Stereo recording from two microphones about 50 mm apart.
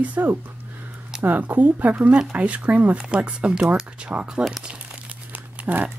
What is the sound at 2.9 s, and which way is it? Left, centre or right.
Speech, centre.